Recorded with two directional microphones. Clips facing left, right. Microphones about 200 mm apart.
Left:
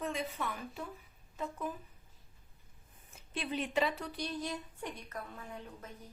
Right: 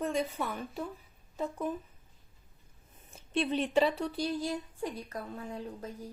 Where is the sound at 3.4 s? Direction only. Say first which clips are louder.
Right 6 dB; 30° right (ahead or behind).